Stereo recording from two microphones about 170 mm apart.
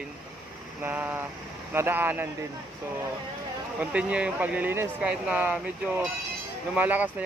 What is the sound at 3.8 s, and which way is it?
Speech, 10° right (ahead or behind).